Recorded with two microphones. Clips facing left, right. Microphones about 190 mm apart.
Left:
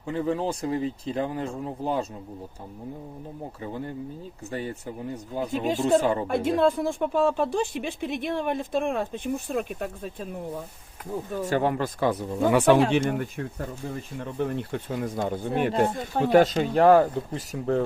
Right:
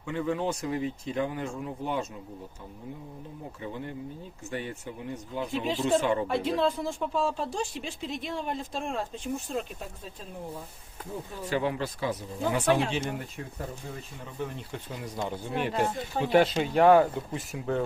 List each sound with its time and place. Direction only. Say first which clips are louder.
0.0 s speech: left 3 dB; 35° left (ahead or behind)
3.6 s speech: left 3 dB; 35° left (ahead or behind)
6.2 s speech: left 4 dB; 50° left (ahead or behind); by 10.6 s 65° left (ahead or behind)
11.3 s speech: left 5 dB; 45° left (ahead or behind); by 12.8 s 65° left (ahead or behind)
12.9 s speech: left 8 dB; 55° left (ahead or behind); by 17.8 s 35° left (ahead or behind)